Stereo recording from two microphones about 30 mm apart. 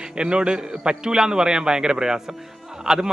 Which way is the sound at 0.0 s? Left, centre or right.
Right.